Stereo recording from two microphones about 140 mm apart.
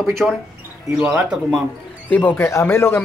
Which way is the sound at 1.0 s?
15° right (ahead or behind).